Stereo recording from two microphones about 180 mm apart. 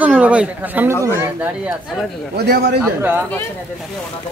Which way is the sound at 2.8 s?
10° right (ahead or behind).